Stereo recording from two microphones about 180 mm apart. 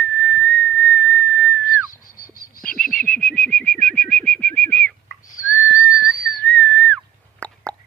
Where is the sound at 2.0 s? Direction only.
50° left (ahead or behind).